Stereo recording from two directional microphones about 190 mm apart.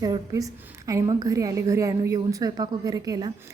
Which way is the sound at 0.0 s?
20° right (ahead or behind).